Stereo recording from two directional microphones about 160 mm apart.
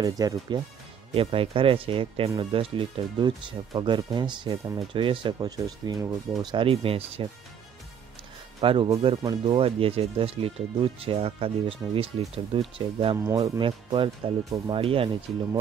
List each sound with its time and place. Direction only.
0.0 s speech: 25° right (ahead or behind)
8.5 s speech: 30° right (ahead or behind)
13.2 s speech: 20° right (ahead or behind)
13.6 s speech: 30° right (ahead or behind)